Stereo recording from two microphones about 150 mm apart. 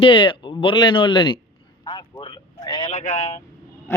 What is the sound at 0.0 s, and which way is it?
Speech, 35° left (ahead or behind).